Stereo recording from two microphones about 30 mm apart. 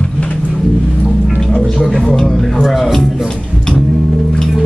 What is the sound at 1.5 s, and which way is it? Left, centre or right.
Music, left.